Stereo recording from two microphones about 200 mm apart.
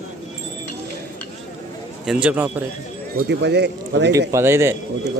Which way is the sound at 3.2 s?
55° right (ahead or behind).